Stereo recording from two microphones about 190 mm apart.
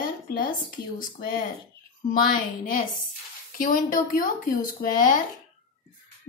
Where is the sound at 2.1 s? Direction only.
50° left (ahead or behind).